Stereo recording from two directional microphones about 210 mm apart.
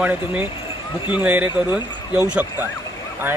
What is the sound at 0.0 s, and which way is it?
Speech, 5° right (ahead or behind).